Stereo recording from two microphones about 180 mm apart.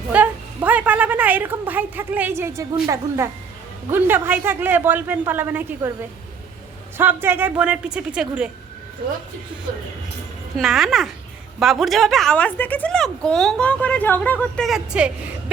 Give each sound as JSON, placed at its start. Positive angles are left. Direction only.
{"t": 0.1, "sound": "a woman's voice", "side_deg": -10}
{"t": 6.9, "sound": "a man's voice", "side_deg": -10}
{"t": 10.6, "sound": "a woman's voice", "side_deg": 0}